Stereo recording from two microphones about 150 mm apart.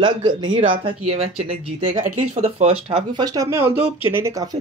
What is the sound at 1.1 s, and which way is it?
Speech, 45° right (ahead or behind).